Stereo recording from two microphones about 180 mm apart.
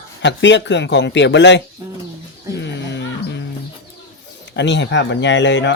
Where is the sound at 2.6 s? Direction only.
75° left (ahead or behind).